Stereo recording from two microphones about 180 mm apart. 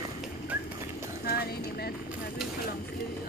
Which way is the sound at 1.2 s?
60° left (ahead or behind).